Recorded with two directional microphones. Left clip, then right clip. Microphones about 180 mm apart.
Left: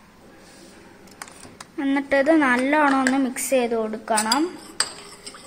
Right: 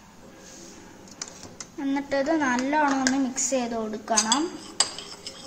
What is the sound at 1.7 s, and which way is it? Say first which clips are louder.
A woman's voice: left 6 dB; 40° left (ahead or behind).